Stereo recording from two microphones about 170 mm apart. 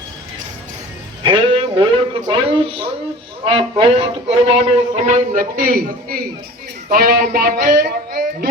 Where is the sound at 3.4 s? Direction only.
30° right (ahead or behind).